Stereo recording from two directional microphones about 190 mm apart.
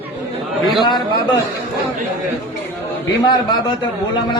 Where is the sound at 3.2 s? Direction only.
20° left (ahead or behind).